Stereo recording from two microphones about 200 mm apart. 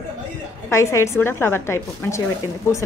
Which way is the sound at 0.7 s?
15° left (ahead or behind).